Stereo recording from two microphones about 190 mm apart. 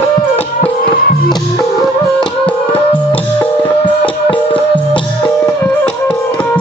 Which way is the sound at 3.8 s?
25° left (ahead or behind).